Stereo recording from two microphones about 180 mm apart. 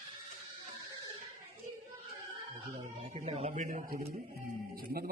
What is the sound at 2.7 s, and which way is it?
A man's voice, 35° right (ahead or behind).